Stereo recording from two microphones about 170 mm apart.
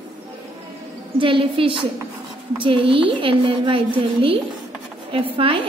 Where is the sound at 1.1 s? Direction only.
30° right (ahead or behind).